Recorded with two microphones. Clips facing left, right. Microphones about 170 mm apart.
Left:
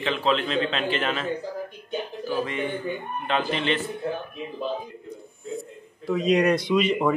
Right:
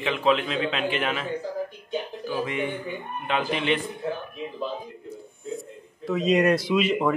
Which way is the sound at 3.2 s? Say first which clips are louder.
Even; 10° right (ahead or behind).